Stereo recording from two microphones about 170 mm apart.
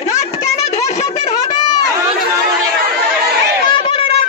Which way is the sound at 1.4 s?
25° left (ahead or behind).